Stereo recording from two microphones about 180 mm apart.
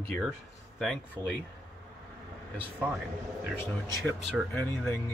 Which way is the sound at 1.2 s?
20° right (ahead or behind).